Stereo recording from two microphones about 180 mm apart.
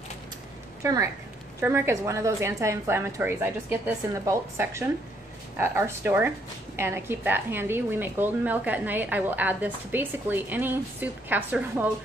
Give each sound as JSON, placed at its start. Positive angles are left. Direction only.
{"t": 0.8, "sound": "a woman's voice", "side_deg": -20}